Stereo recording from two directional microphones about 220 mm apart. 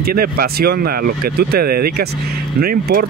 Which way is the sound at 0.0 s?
45° right (ahead or behind).